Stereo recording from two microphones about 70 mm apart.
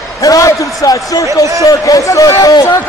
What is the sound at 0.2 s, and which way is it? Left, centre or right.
Speech, left.